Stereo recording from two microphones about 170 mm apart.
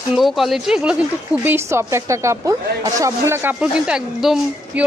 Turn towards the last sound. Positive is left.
turn(degrees=-5)  # may be behind; listen again after turning